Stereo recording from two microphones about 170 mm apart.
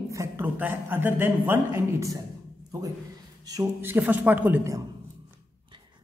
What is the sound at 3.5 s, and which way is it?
A woman's voice, 15° right (ahead or behind).